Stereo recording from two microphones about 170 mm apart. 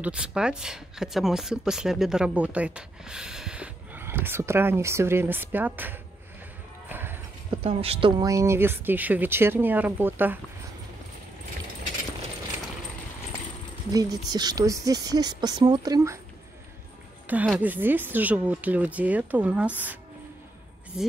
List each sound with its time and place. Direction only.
0.0 s speech: 5° right (ahead or behind)
6.9 s clip-clop: 10° right (ahead or behind)
7.6 s speech: 35° right (ahead or behind); by 10.4 s 10° right (ahead or behind)
13.9 s speech: 20° right (ahead or behind)
17.3 s speech: 10° right (ahead or behind)